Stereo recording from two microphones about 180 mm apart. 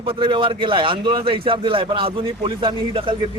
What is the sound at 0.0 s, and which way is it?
A man's voice, 30° right (ahead or behind).